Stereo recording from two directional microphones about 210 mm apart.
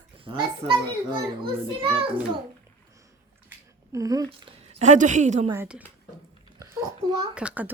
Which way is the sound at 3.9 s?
15° right (ahead or behind).